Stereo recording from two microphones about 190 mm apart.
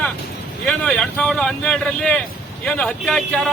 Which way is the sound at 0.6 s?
5° left (ahead or behind).